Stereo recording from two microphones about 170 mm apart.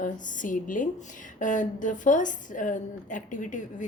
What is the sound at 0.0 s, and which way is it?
A woman's voice, 50° left (ahead or behind).